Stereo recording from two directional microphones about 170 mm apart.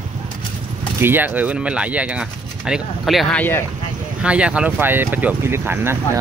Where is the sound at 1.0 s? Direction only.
10° right (ahead or behind); by 3.6 s 10° left (ahead or behind).